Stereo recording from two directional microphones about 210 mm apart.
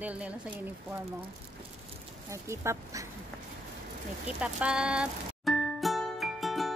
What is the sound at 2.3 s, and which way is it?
Speech, 15° right (ahead or behind).